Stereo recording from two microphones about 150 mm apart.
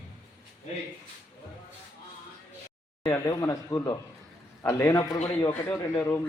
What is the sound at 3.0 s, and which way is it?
A man's voice, 20° left (ahead or behind).